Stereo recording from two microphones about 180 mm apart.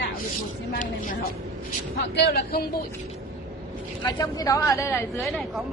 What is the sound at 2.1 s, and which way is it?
Speech, 65° left (ahead or behind).